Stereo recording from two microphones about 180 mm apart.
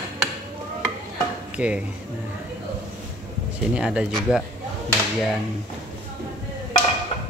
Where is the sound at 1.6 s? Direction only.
5° right (ahead or behind).